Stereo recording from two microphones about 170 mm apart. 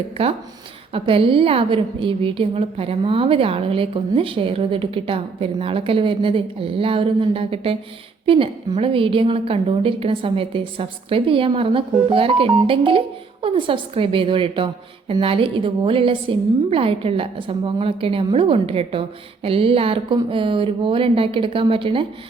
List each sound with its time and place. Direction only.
0.2 s a woman's voice: 35° right (ahead or behind)